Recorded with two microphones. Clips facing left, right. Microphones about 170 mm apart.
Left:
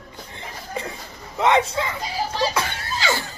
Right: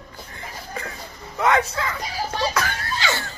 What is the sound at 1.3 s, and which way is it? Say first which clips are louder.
Speech: left 2 dB; 25° left (ahead or behind).